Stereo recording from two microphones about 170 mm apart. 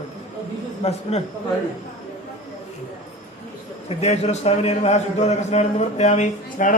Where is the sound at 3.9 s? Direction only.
40° left (ahead or behind).